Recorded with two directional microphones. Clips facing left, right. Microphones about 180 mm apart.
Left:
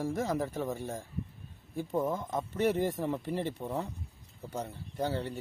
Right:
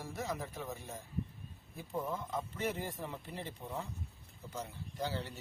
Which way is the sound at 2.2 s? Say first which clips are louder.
Left 8 dB; 75° left (ahead or behind).